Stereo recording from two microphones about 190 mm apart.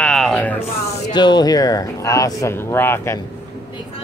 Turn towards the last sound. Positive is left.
turn(degrees=15)  # may be behind; listen again after turning